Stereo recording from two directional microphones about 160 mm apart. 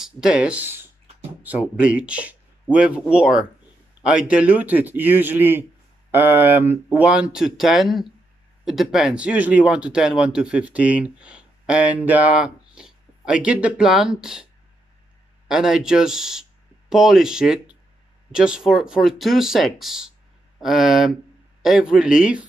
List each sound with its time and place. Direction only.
0.0 s speech: 5° right (ahead or behind)